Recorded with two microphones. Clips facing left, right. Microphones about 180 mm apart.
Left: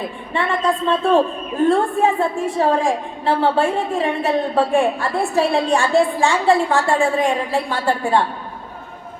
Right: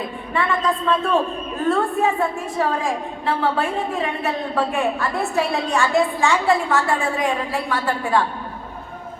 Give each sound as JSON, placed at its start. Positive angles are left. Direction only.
{"t": 0.3, "sound": "a woman's voice", "side_deg": 30}